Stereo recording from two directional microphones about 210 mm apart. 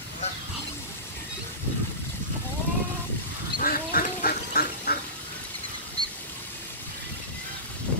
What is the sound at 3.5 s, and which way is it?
Duck, 45° left (ahead or behind).